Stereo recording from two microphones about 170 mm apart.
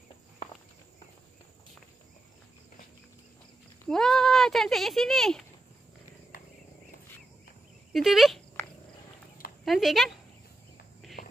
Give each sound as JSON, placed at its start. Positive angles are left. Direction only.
{"t": 3.9, "sound": "a child's voice", "side_deg": 5}
{"t": 6.3, "sound": "cricket", "side_deg": 55}
{"t": 7.9, "sound": "speech", "side_deg": 0}
{"t": 9.7, "sound": "speech", "side_deg": 0}